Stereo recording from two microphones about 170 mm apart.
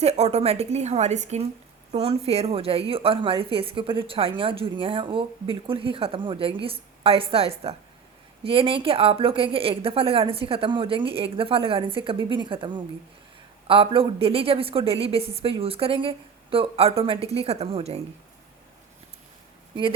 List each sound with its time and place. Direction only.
0.0 s a woman's voice: 40° right (ahead or behind)